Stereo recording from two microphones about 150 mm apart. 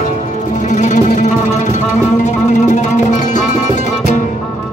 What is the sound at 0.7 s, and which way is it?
Music, 55° left (ahead or behind).